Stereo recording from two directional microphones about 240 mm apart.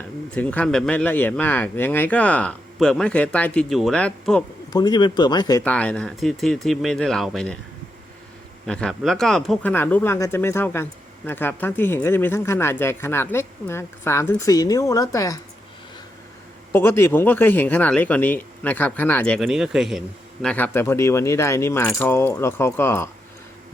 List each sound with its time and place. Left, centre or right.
0.3 s speech: centre
4.7 s speech: centre
8.6 s speech: centre
16.7 s speech: centre